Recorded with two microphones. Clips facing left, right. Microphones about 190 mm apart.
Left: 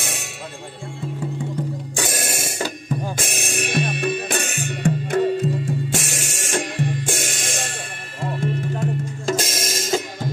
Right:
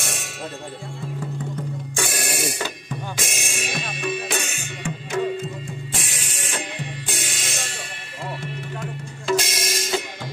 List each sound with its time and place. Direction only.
2.0 s music: 45° left (ahead or behind)
3.3 s music: 60° left (ahead or behind)
6.0 s music: 45° left (ahead or behind)